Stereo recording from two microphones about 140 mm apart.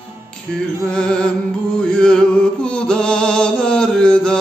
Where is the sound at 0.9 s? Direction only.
5° left (ahead or behind).